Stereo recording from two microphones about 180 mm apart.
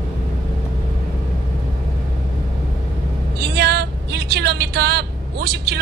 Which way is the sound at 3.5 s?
65° right (ahead or behind).